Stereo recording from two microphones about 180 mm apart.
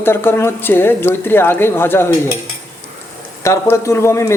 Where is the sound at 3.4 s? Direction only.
15° left (ahead or behind).